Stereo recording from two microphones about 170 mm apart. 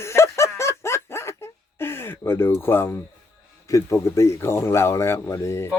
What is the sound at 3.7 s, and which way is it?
Speech, 15° left (ahead or behind).